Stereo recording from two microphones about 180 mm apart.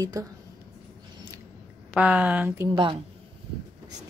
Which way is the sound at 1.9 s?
5° right (ahead or behind).